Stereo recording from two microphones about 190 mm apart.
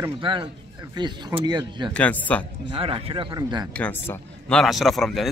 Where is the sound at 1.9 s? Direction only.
5° left (ahead or behind).